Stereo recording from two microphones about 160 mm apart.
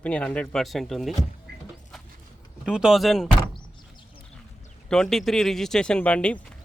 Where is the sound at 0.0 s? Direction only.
5° left (ahead or behind).